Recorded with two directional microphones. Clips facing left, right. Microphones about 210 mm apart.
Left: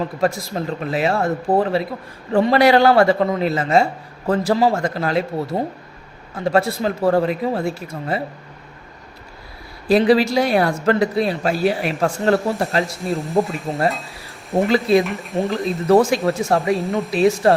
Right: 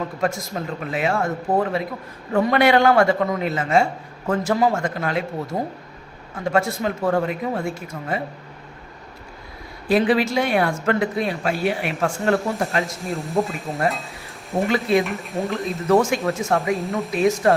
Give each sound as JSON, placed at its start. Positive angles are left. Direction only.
{"t": 0.2, "sound": "speech", "side_deg": 35}
{"t": 9.9, "sound": "speech", "side_deg": 35}
{"t": 13.1, "sound": "speech", "side_deg": 0}
{"t": 14.7, "sound": "speech", "side_deg": 35}
{"t": 15.0, "sound": "speech", "side_deg": 0}
{"t": 15.9, "sound": "speech", "side_deg": 35}
{"t": 16.7, "sound": "speech", "side_deg": 0}
{"t": 17.1, "sound": "speech", "side_deg": 30}